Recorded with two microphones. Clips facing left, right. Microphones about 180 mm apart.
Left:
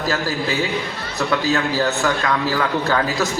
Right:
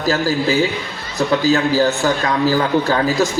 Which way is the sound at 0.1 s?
30° right (ahead or behind).